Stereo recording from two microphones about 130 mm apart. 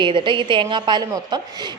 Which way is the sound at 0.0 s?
40° right (ahead or behind).